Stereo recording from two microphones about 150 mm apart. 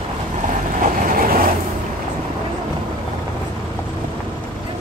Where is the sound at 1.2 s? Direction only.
70° right (ahead or behind).